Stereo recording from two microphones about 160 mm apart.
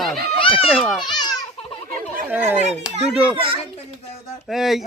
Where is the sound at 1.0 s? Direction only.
25° left (ahead or behind).